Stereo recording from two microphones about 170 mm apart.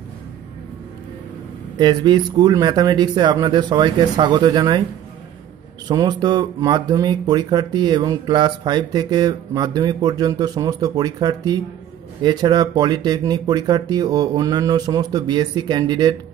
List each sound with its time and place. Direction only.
1.8 s speech: 25° right (ahead or behind)
5.9 s speech: 25° right (ahead or behind)